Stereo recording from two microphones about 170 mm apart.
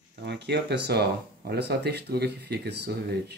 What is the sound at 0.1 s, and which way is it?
Speech, 90° right.